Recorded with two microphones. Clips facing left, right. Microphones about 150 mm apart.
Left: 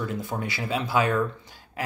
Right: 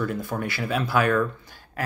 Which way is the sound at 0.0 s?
20° left (ahead or behind).